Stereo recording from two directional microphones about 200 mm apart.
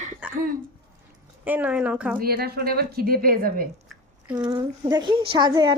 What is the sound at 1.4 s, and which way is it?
Speech, 10° right (ahead or behind).